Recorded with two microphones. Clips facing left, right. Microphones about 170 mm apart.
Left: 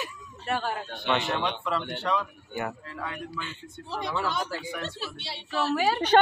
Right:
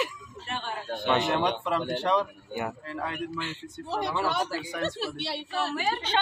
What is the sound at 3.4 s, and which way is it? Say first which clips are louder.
A woman's voice: right 4 dB; 65° right (ahead or behind).